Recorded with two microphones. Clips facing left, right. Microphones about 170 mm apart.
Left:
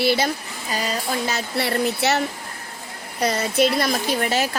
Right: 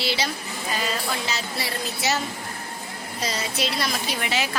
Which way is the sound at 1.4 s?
60° left (ahead or behind).